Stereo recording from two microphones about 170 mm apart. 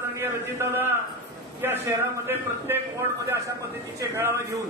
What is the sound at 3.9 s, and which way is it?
Speech, 15° right (ahead or behind).